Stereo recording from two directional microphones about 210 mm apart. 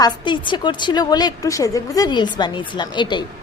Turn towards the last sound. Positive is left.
turn(degrees=20)  # may be behind; listen again after turning